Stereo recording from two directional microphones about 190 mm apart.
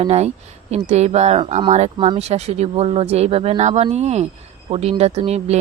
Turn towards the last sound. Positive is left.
turn(degrees=-35)  # may be behind; listen again after turning